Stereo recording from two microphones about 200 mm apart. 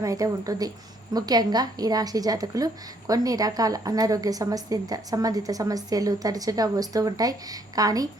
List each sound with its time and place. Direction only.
0.0 s a woman's voice: 15° right (ahead or behind)